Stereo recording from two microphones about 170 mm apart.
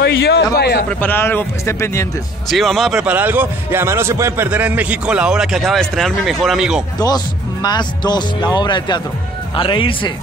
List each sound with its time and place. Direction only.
0.0 s a man's voice: 70° left (ahead or behind)
0.8 s a man's voice: 10° left (ahead or behind)
2.5 s a man's voice: centre (ahead or behind)
7.6 s speech: 25° left (ahead or behind)